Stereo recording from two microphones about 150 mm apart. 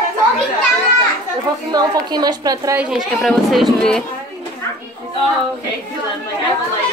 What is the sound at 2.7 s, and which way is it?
A woman's voice, 5° right (ahead or behind).